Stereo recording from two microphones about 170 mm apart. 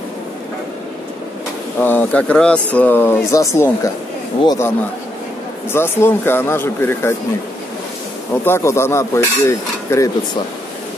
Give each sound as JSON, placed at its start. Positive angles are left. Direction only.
{"t": 1.8, "sound": "speech", "side_deg": 10}
{"t": 8.5, "sound": "speech", "side_deg": 15}